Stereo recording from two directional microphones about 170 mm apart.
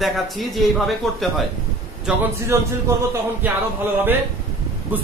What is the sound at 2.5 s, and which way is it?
A woman's voice, 15° right (ahead or behind).